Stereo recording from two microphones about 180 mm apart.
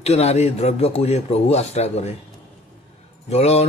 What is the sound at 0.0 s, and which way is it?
Speech, 35° left (ahead or behind).